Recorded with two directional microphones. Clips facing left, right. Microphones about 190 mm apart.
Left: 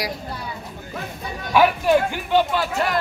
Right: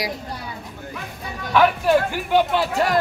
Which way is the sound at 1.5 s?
5° left (ahead or behind).